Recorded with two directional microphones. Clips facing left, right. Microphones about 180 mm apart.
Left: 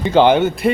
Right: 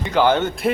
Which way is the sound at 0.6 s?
Centre (ahead or behind).